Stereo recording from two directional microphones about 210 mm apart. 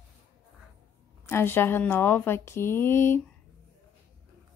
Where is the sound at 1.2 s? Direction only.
10° left (ahead or behind).